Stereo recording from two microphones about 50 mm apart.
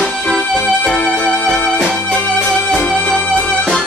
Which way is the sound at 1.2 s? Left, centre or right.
Centre.